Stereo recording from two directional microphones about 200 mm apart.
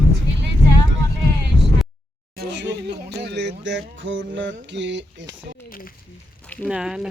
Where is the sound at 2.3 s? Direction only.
60° right (ahead or behind).